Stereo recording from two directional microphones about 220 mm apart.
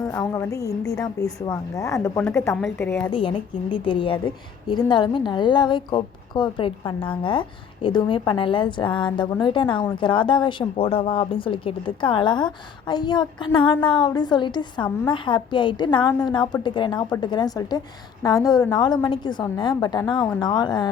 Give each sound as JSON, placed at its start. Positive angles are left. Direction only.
{"t": 0.0, "sound": "a woman's voice", "side_deg": 5}
{"t": 3.0, "sound": "a woman's voice", "side_deg": 20}